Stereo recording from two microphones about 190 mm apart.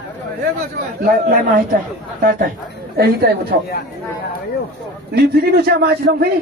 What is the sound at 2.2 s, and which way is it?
A man's voice, 45° right (ahead or behind).